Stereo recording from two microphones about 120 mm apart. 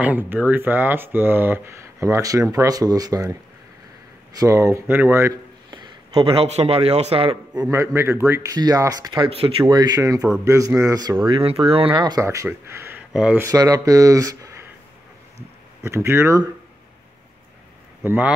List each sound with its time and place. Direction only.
0.0 s speech: 15° right (ahead or behind)
4.4 s speech: 25° right (ahead or behind)
5.7 s speech: 45° right (ahead or behind)
7.7 s speech: 20° right (ahead or behind)
11.4 s speech: 55° right (ahead or behind)
12.0 s speech: 30° right (ahead or behind)
13.1 s speech: 10° right (ahead or behind)
13.4 s speech: 30° right (ahead or behind)
15.8 s speech: 20° right (ahead or behind)
18.0 s speech: 15° right (ahead or behind)